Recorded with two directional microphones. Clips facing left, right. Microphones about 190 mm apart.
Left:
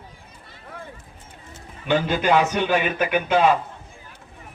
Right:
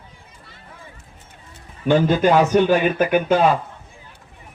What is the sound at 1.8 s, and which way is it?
A man's voice, 40° right (ahead or behind).